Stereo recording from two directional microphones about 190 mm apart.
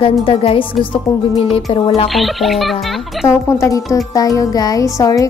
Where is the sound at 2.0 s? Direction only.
Centre (ahead or behind).